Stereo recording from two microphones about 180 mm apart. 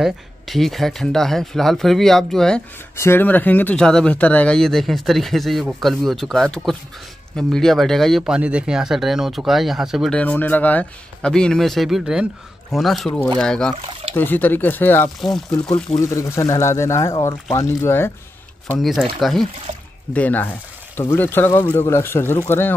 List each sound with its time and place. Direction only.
0.0 s speech: centre (ahead or behind)
15.1 s speech: centre (ahead or behind)
16.0 s speech: 15° left (ahead or behind)
18.8 s speech: centre (ahead or behind)